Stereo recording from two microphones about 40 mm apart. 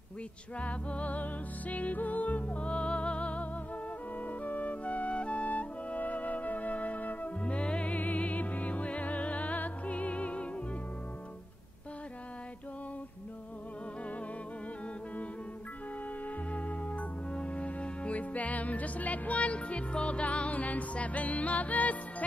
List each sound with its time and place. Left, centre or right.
0.6 s music: left
4.2 s flute: left
8.0 s music: left
16.3 s music: left